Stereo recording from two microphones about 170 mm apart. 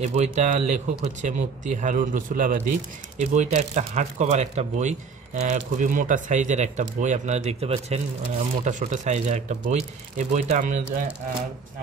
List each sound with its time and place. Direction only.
0.0 s speech: 40° right (ahead or behind)